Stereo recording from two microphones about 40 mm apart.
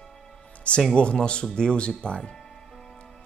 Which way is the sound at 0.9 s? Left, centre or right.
Left.